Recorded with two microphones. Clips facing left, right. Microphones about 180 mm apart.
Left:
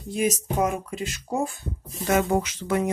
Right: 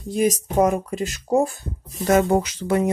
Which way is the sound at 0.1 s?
35° right (ahead or behind).